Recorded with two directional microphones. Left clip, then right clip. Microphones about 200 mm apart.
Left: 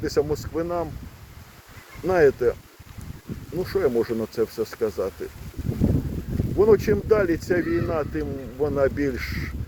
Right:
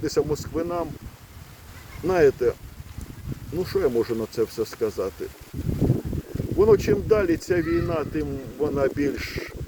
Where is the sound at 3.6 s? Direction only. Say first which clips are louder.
Even; 15° right (ahead or behind).